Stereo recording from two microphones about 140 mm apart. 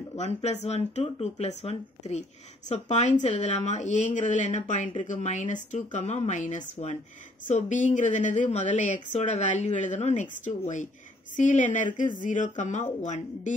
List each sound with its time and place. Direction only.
0.1 s speech: 50° left (ahead or behind)